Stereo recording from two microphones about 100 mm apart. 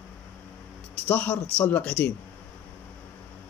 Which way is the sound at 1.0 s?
15° left (ahead or behind).